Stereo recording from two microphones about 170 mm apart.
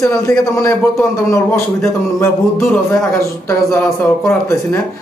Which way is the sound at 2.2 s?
10° left (ahead or behind).